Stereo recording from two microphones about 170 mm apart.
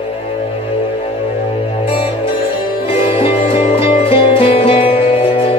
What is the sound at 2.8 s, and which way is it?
Music, 35° left (ahead or behind).